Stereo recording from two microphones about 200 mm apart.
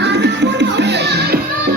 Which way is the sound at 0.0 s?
60° right (ahead or behind).